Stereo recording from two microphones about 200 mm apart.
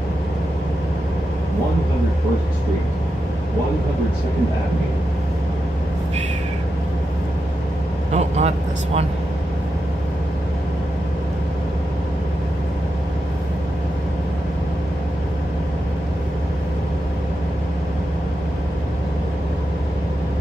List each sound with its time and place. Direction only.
8.1 s speech: 35° right (ahead or behind)